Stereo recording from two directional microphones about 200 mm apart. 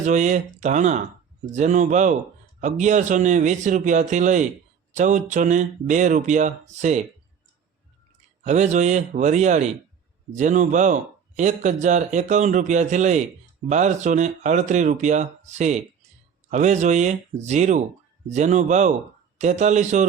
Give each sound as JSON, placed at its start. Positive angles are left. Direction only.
{"t": 0.0, "sound": "speech", "side_deg": -35}
{"t": 8.4, "sound": "speech", "side_deg": -35}